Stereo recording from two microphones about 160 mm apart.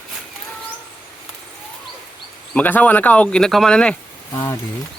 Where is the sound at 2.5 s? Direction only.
10° left (ahead or behind).